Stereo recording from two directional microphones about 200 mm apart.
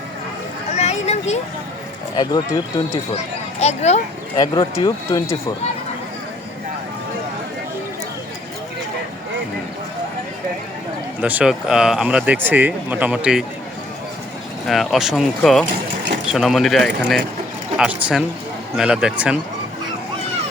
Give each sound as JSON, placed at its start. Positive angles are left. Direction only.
{"t": 0.8, "sound": "a sound", "side_deg": 35}
{"t": 2.1, "sound": "speech", "side_deg": 20}
{"t": 3.6, "sound": "speech", "side_deg": 35}
{"t": 4.4, "sound": "speech", "side_deg": 20}
{"t": 11.2, "sound": "speech", "side_deg": -5}
{"t": 14.7, "sound": "speech", "side_deg": 0}